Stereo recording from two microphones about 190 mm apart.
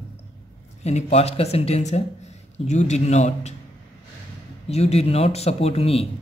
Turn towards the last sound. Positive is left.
turn(degrees=30)  # may be behind; listen again after turning